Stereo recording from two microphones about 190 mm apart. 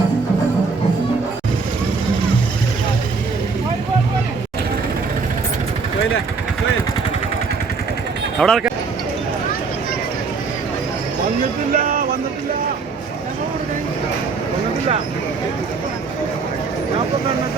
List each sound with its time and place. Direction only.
8.4 s speech: centre (ahead or behind)
11.7 s music: 45° right (ahead or behind)